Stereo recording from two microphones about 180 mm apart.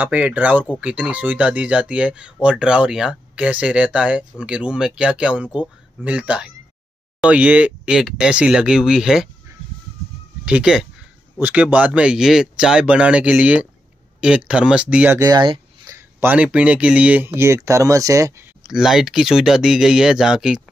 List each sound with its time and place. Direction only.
0.0 s speech: 10° right (ahead or behind)
10.4 s speech: 5° right (ahead or behind); by 16.0 s 25° right (ahead or behind)
16.2 s speech: 10° right (ahead or behind)
18.7 s speech: centre (ahead or behind)